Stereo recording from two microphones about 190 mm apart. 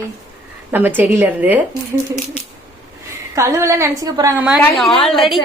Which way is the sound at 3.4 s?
15° right (ahead or behind).